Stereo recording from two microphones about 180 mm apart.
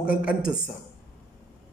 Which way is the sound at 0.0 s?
5° right (ahead or behind).